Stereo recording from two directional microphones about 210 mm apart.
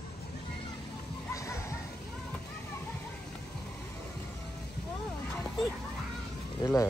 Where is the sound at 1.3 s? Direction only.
15° left (ahead or behind).